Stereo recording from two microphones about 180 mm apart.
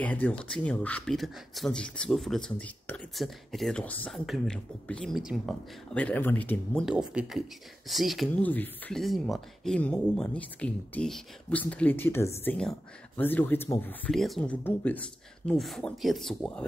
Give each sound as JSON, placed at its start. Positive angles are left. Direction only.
{"t": 0.0, "sound": "speech", "side_deg": 10}